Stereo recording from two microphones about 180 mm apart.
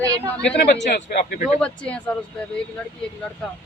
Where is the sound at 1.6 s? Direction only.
5° left (ahead or behind).